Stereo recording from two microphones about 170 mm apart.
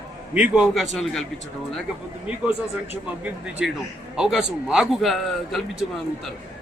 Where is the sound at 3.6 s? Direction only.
5° right (ahead or behind).